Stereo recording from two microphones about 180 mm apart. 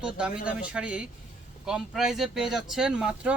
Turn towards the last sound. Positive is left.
turn(degrees=-5)  # may be behind; listen again after turning